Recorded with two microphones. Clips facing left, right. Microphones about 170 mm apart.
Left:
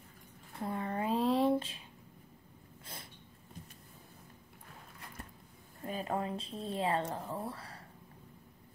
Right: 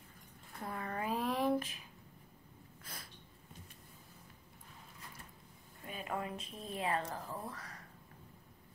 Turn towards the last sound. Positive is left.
turn(degrees=30)  # may be behind; listen again after turning